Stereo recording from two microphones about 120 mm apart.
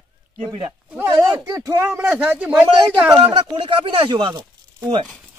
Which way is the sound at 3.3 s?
50° right (ahead or behind).